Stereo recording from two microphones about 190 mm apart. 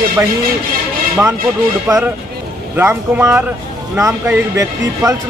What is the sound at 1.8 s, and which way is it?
Speech, 15° right (ahead or behind).